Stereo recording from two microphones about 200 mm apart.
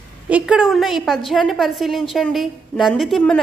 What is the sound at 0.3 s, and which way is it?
A woman's voice, 5° right (ahead or behind).